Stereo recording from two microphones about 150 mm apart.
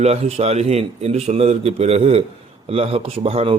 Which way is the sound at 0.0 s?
45° right (ahead or behind).